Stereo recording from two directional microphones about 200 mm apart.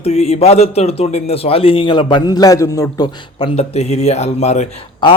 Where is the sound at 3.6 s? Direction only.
30° left (ahead or behind).